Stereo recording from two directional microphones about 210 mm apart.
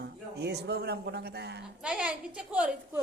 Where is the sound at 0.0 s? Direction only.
50° right (ahead or behind).